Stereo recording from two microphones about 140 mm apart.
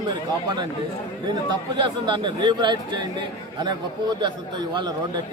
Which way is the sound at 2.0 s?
35° right (ahead or behind).